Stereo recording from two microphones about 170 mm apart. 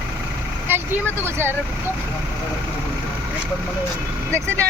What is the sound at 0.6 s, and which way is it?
Speech, 15° right (ahead or behind).